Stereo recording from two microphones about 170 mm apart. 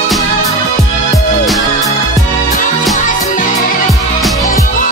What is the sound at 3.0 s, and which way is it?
Music, 50° left (ahead or behind).